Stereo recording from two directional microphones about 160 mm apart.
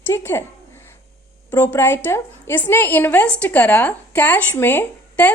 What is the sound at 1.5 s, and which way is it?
A woman's voice, 15° left (ahead or behind).